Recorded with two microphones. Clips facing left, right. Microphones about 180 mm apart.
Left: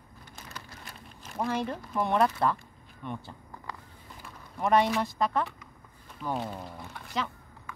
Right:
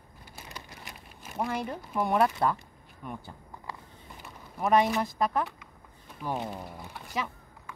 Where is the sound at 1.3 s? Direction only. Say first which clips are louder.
Left 1 dB; 5° right (ahead or behind).